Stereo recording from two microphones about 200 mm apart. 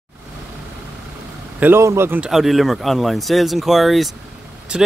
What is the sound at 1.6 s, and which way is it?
Speech, 10° right (ahead or behind).